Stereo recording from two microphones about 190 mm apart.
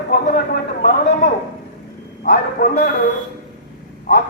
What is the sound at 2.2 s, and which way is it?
Speech, 50° left (ahead or behind).